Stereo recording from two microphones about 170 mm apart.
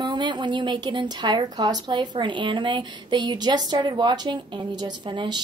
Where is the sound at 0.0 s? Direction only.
25° right (ahead or behind).